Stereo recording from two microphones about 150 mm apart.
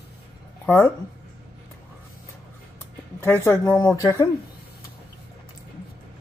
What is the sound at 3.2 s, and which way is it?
Speech, 15° left (ahead or behind).